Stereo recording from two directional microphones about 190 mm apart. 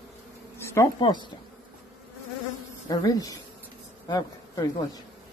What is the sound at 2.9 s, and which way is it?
Speech, 20° left (ahead or behind).